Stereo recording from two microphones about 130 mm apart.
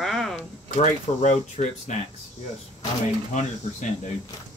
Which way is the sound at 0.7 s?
60° left (ahead or behind).